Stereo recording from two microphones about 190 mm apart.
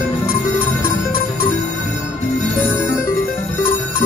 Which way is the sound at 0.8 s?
50° left (ahead or behind).